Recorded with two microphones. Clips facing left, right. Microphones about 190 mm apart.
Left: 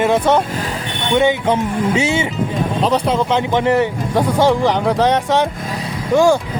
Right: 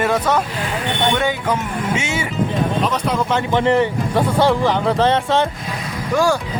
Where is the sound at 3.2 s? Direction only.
15° left (ahead or behind).